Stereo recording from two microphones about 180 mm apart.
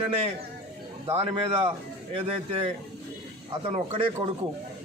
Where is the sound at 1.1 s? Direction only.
30° right (ahead or behind).